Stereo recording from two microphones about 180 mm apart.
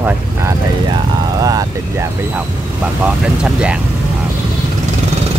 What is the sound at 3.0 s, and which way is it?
Speech, 5° right (ahead or behind).